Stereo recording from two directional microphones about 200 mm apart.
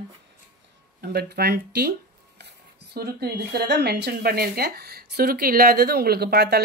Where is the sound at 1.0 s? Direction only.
50° right (ahead or behind).